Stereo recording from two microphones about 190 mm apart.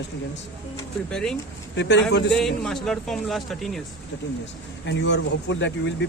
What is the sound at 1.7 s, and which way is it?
Speech, 70° left (ahead or behind).